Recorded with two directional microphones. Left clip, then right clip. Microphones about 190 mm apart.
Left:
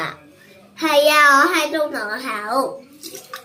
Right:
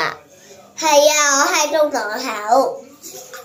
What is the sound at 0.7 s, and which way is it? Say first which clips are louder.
A child's voice: right 1 dB; 25° left (ahead or behind).